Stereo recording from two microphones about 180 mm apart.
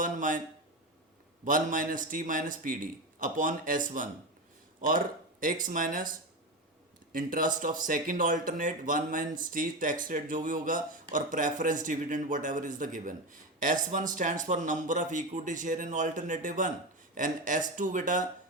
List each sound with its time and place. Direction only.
0.0 s speech: 45° right (ahead or behind)
1.5 s speech: 50° right (ahead or behind)